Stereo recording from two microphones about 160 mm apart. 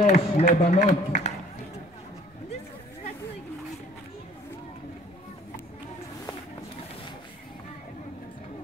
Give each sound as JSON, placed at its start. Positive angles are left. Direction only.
{"t": 0.0, "sound": "speech", "side_deg": 50}